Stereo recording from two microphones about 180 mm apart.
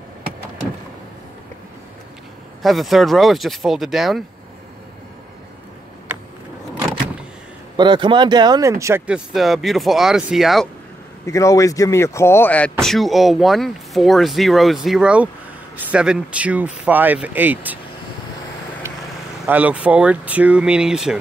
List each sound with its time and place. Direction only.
2.6 s speech: centre (ahead or behind)
7.7 s speech: 25° right (ahead or behind); by 10.7 s centre (ahead or behind)
11.2 s speech: 15° left (ahead or behind); by 17.7 s 10° right (ahead or behind)
18.8 s vehicle: 15° right (ahead or behind)
19.4 s speech: 10° right (ahead or behind)